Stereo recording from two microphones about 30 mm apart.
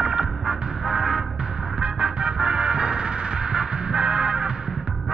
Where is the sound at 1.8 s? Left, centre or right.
Right.